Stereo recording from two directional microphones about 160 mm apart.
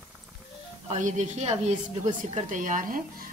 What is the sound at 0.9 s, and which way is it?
Speech, 50° right (ahead or behind).